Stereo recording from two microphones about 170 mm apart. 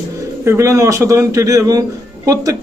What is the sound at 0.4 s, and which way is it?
A man's voice, 15° right (ahead or behind).